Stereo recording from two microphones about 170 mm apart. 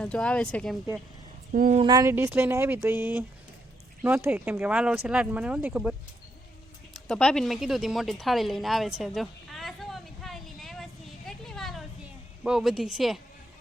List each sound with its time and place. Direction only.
0.0 s speech: 5° left (ahead or behind)
1.5 s speech: 50° right (ahead or behind)
1.8 s speech: 20° right (ahead or behind); by 6.0 s 5° right (ahead or behind)
6.9 s a sound: 5° left (ahead or behind)
12.4 s speech: centre (ahead or behind)